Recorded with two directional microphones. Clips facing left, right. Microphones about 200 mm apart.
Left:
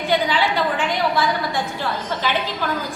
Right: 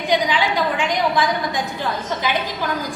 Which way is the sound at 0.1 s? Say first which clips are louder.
Right 1 dB; 15° right (ahead or behind).